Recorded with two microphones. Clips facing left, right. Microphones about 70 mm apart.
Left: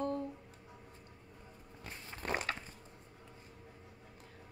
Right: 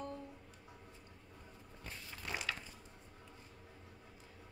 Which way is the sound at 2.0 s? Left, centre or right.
Left.